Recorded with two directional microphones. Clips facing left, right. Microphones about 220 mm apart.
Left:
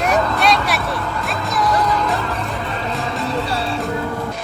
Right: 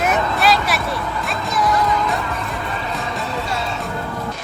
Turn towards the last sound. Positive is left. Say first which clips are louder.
# left 2 dB
turn(degrees=30)  # may be behind; listen again after turning